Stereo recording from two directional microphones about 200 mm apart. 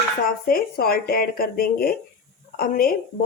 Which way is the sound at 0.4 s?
50° left (ahead or behind).